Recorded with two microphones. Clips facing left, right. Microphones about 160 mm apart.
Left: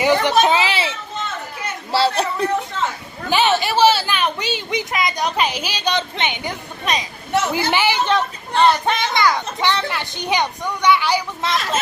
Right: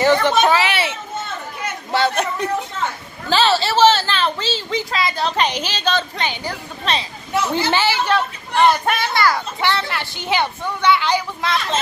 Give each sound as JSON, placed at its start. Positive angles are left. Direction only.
{"t": 0.0, "sound": "a woman's voice", "side_deg": 15}
{"t": 0.5, "sound": "a child's voice", "side_deg": 25}
{"t": 3.3, "sound": "a woman's voice", "side_deg": 15}
{"t": 8.1, "sound": "speech", "side_deg": -10}
{"t": 9.0, "sound": "a woman's voice", "side_deg": 15}